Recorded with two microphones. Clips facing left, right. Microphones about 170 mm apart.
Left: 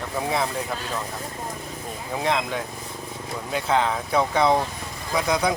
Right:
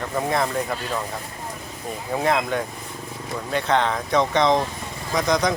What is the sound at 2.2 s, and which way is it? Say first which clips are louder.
Speech: right 3 dB; centre (ahead or behind).